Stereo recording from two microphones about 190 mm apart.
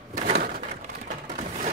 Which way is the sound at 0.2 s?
45° right (ahead or behind).